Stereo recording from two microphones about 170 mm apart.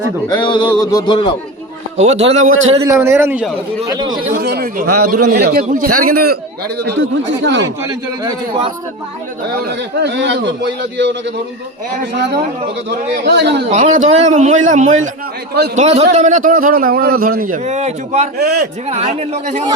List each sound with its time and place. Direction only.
0.4 s music: 30° left (ahead or behind)
2.0 s a man's voice: 40° right (ahead or behind)
2.8 s a man's voice: 15° right (ahead or behind)
3.8 s a man's voice: 25° right (ahead or behind)
4.4 s a sound: 65° right (ahead or behind)
5.3 s a man's voice: 60° right (ahead or behind)
6.8 s a man's voice: 90° right
8.2 s a man's voice: 25° right (ahead or behind)
9.6 s a man's voice: 80° right
12.9 s a man's voice: 80° right
13.7 s a man's voice: 40° right (ahead or behind)
18.3 s a man's voice: 65° right (ahead or behind)
18.9 s a man's voice: 40° right (ahead or behind)